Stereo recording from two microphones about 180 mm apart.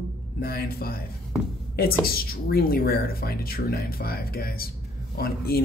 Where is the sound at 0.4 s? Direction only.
55° left (ahead or behind).